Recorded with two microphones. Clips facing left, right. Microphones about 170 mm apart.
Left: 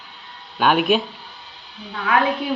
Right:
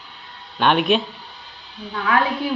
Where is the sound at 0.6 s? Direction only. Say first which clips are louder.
Even; 5° left (ahead or behind).